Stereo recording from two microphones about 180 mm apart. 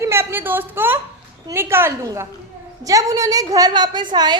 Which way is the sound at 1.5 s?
15° right (ahead or behind).